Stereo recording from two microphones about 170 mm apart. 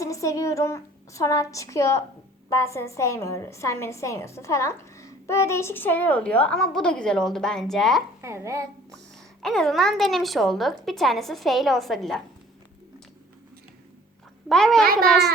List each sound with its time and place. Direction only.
0.0 s a woman's voice: 20° left (ahead or behind); by 8.0 s centre (ahead or behind)
8.2 s a child's voice: 15° right (ahead or behind)
9.4 s a woman's voice: centre (ahead or behind)
14.5 s a woman's voice: centre (ahead or behind)